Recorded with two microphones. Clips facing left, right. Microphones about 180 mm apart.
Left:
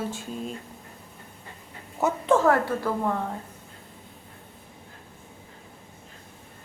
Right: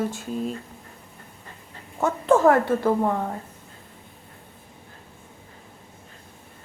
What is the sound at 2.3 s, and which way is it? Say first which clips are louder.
Speech: right 4 dB; 20° right (ahead or behind).